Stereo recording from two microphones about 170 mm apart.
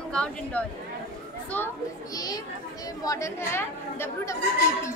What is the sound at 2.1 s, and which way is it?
A child's voice, 20° left (ahead or behind).